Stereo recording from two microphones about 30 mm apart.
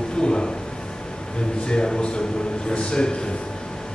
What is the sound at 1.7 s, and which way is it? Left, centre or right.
A man's voice, left.